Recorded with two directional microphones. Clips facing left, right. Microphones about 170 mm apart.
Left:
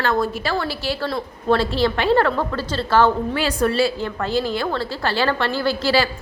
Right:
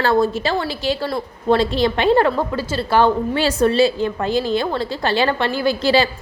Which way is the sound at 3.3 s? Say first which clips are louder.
Right 3 dB; 25° right (ahead or behind).